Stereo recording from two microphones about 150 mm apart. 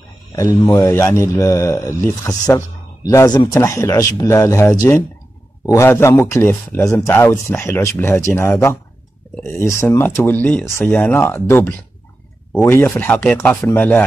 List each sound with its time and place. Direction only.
0.3 s speech: 20° left (ahead or behind)